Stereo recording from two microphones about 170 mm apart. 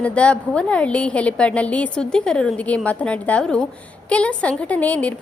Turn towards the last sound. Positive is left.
turn(degrees=10)  # may be behind; listen again after turning